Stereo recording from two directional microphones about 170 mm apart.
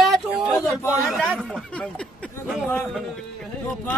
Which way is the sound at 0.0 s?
Centre (ahead or behind).